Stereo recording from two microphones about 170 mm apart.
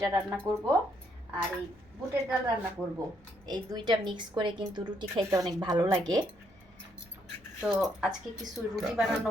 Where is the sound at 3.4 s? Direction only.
25° right (ahead or behind).